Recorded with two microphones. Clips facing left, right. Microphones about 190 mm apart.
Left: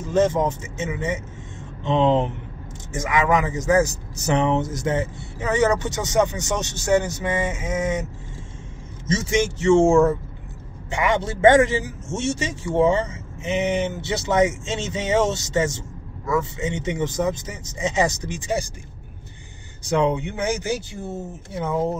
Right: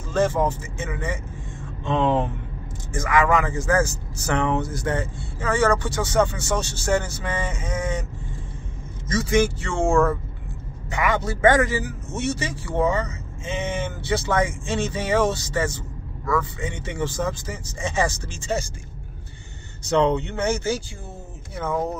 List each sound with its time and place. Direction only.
0.0 s a man's voice: 20° left (ahead or behind)
9.0 s a man's voice: 25° left (ahead or behind)
19.8 s a man's voice: 10° left (ahead or behind)